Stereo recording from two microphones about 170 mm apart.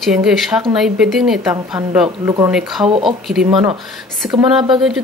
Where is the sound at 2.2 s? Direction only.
20° right (ahead or behind).